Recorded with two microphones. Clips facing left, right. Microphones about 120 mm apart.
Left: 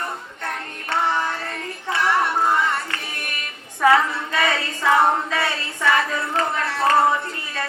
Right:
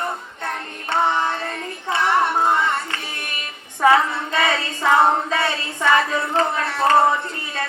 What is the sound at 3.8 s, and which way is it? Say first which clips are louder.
Child singing: right 1 dB; 25° right (ahead or behind).